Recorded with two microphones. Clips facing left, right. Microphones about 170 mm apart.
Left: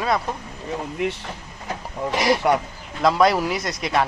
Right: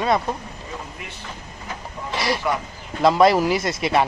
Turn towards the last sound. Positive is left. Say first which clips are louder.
# right 2 dB
turn(degrees=0)  # may be behind; listen again after turning